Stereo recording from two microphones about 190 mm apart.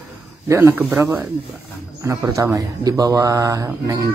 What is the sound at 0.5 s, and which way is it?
A man's voice, 15° right (ahead or behind).